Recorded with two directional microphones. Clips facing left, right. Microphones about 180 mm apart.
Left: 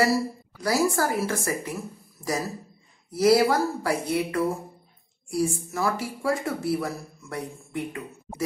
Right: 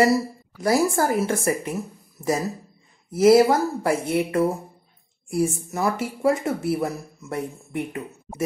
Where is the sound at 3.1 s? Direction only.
25° right (ahead or behind).